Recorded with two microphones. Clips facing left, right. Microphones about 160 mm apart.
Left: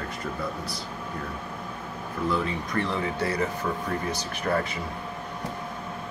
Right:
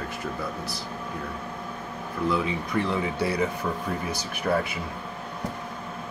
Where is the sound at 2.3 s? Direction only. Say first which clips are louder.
Right 1 dB; 5° right (ahead or behind).